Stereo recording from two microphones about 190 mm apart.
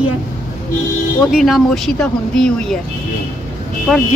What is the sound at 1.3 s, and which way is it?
Speech, centre (ahead or behind).